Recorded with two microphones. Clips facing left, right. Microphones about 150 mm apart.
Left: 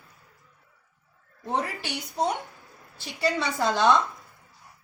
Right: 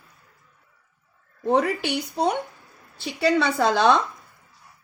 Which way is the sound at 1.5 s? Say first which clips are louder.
Right 8 dB; 65° right (ahead or behind).